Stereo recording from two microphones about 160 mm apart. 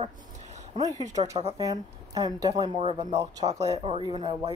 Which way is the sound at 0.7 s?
25° right (ahead or behind).